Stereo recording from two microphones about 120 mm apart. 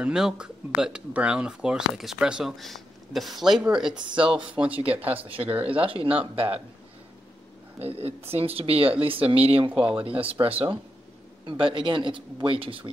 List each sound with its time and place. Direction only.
0.0 s speech: 5° right (ahead or behind)
5.8 s speech: 50° right (ahead or behind)
7.8 s speech: 55° right (ahead or behind)
9.7 s speech: 10° right (ahead or behind)
10.4 s speech: 35° right (ahead or behind)
11.4 s speech: 45° right (ahead or behind)